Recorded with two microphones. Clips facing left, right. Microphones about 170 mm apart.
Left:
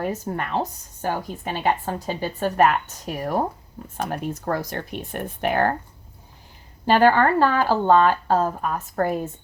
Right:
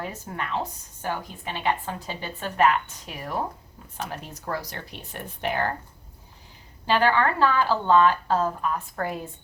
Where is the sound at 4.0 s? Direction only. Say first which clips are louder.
Left 8 dB; 55° left (ahead or behind).